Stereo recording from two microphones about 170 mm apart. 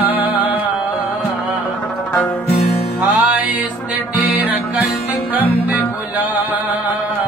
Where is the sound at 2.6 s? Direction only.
40° left (ahead or behind).